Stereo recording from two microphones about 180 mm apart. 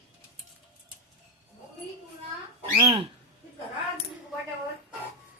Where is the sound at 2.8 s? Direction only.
30° right (ahead or behind).